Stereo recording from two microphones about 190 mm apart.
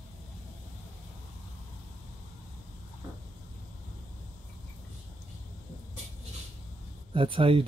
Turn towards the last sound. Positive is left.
turn(degrees=-30)  # may be behind; listen again after turning